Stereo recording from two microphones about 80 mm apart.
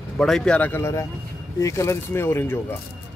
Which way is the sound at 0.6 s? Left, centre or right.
Left.